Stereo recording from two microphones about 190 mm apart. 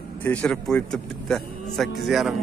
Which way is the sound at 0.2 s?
5° left (ahead or behind).